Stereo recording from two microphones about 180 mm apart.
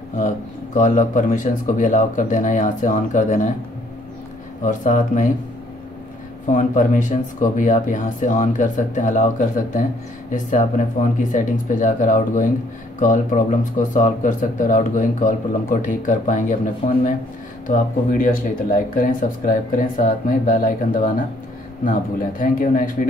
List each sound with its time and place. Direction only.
0.7 s speech: 45° left (ahead or behind)
4.6 s speech: 45° left (ahead or behind)
6.4 s speech: 45° left (ahead or behind)
22.4 s speech: 50° left (ahead or behind)